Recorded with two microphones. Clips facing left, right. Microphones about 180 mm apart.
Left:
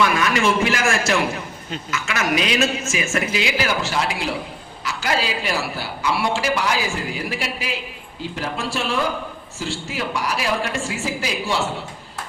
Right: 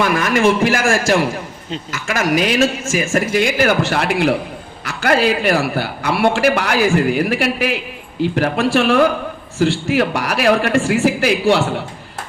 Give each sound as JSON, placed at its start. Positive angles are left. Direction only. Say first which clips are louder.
{"t": 0.0, "sound": "a man's voice", "louder": "right 4 dB", "side_deg": -50}